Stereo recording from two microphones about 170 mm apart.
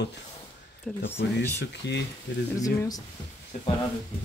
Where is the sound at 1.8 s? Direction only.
90° left.